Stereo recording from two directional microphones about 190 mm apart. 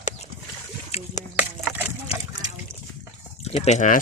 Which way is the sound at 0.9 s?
35° left (ahead or behind).